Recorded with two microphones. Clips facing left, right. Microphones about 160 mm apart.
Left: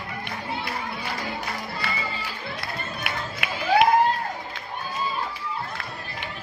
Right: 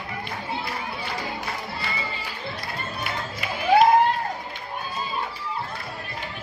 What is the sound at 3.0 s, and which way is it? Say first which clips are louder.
Music: even; 70° left (ahead or behind).